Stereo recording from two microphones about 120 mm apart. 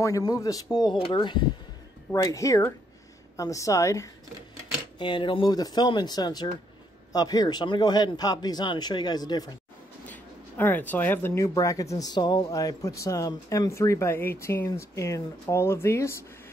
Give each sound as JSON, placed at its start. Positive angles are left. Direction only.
{"t": 0.0, "sound": "a man's voice", "side_deg": 30}
{"t": 2.2, "sound": "speech", "side_deg": 25}
{"t": 4.9, "sound": "a man's voice", "side_deg": 45}
{"t": 10.6, "sound": "speech", "side_deg": 15}
{"t": 11.4, "sound": "speech", "side_deg": 30}